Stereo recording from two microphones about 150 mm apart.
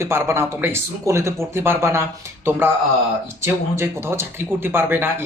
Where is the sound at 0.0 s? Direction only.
15° right (ahead or behind).